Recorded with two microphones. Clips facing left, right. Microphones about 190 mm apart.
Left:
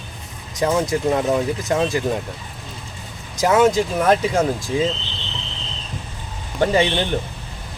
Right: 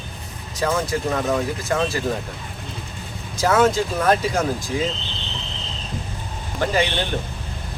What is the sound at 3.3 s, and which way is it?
Speech, 15° left (ahead or behind).